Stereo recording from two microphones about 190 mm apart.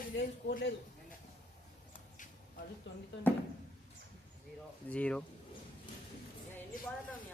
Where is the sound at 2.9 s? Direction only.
70° left (ahead or behind).